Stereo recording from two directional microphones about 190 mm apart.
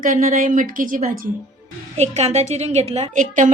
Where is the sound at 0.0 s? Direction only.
45° right (ahead or behind).